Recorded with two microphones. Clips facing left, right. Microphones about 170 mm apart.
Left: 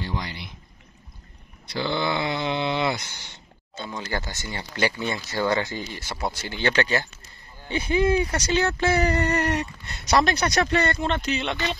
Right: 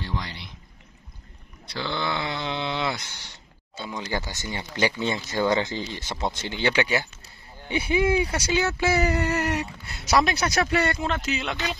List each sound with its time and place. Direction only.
0.0 s a sound: 5° left (ahead or behind)
1.7 s speech: 5° left (ahead or behind)
3.7 s speech: 10° right (ahead or behind)